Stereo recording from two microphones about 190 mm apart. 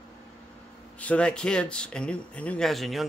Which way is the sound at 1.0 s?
5° left (ahead or behind).